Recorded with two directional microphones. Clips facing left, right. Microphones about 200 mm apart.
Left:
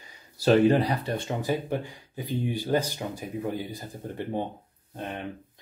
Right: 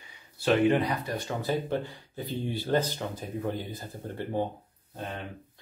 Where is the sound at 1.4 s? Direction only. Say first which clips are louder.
Left 1 dB; 15° left (ahead or behind).